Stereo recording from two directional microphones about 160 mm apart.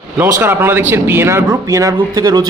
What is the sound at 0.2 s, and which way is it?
A man's voice, 15° right (ahead or behind).